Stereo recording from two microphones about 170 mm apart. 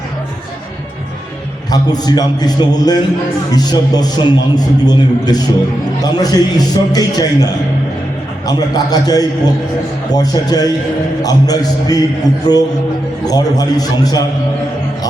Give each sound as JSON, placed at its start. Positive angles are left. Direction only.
{"t": 1.7, "sound": "a man's voice", "side_deg": 25}